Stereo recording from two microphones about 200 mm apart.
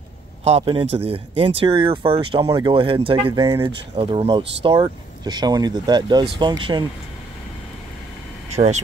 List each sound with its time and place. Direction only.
0.4 s speech: 30° right (ahead or behind)
8.5 s speech: 35° right (ahead or behind)